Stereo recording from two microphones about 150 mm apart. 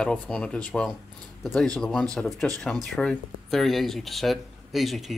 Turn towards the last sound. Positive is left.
turn(degrees=0)  # may be behind; listen again after turning